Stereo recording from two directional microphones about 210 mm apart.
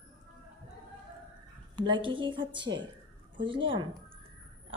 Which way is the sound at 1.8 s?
20° right (ahead or behind).